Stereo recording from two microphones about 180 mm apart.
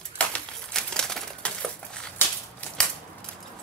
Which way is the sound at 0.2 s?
5° left (ahead or behind).